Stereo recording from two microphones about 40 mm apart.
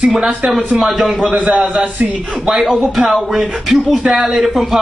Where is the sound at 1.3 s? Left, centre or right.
Right.